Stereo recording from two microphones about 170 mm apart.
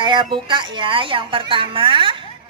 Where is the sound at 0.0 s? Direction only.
25° right (ahead or behind).